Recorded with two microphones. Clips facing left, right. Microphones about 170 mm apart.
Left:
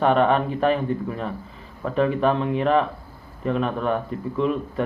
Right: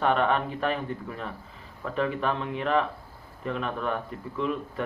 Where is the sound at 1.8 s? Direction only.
25° left (ahead or behind).